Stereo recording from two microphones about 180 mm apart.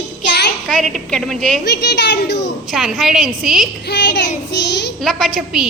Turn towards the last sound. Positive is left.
turn(degrees=0)  # may be behind; listen again after turning